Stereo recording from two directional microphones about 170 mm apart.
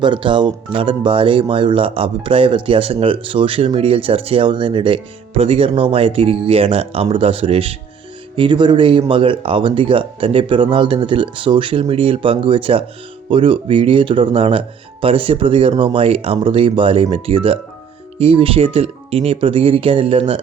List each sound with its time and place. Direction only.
0.0 s speech: 30° right (ahead or behind)